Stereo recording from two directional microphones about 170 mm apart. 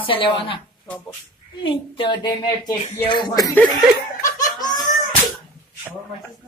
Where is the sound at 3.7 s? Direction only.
20° left (ahead or behind).